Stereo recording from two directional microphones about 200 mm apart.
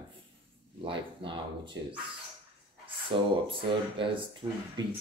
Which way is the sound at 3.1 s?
25° right (ahead or behind).